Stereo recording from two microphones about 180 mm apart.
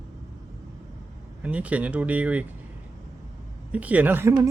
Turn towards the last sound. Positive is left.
turn(degrees=-10)  # may be behind; listen again after turning